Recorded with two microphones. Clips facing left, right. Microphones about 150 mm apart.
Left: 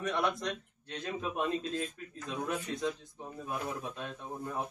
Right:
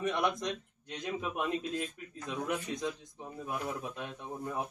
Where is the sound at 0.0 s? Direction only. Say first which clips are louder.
Right 1 dB; 20° right (ahead or behind).